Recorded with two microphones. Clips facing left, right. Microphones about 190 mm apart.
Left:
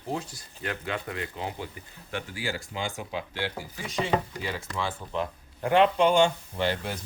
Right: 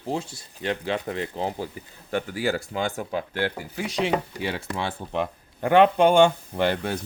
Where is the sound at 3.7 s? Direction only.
75° right (ahead or behind); by 6.9 s 55° right (ahead or behind).